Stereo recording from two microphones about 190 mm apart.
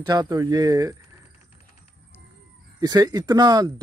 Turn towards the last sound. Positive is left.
turn(degrees=-20)  # may be behind; listen again after turning